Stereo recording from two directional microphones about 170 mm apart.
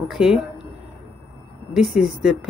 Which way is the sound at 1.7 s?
Centre (ahead or behind).